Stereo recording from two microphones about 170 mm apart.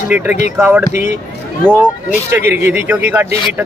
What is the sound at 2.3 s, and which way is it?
Speech, 10° right (ahead or behind).